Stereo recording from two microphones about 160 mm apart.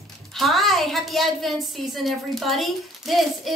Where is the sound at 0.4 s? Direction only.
Centre (ahead or behind).